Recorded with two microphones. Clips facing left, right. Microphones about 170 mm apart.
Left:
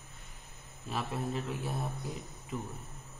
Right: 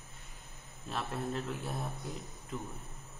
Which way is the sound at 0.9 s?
5° left (ahead or behind).